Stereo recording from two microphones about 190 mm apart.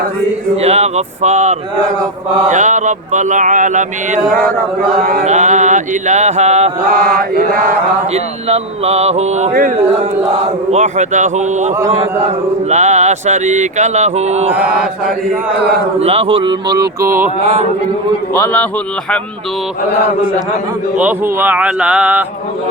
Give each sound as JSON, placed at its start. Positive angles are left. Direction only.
{"t": 0.5, "sound": "speech", "side_deg": -35}
{"t": 7.0, "sound": "chant", "side_deg": -50}
{"t": 8.1, "sound": "speech", "side_deg": -35}
{"t": 12.7, "sound": "speech", "side_deg": -35}
{"t": 14.4, "sound": "speech", "side_deg": -10}
{"t": 16.0, "sound": "speech", "side_deg": -35}
{"t": 17.4, "sound": "speech", "side_deg": -35}
{"t": 18.3, "sound": "a man's voice", "side_deg": 10}
{"t": 21.0, "sound": "speech", "side_deg": -10}